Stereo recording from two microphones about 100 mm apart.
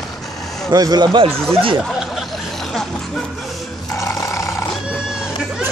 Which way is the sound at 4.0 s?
30° left (ahead or behind).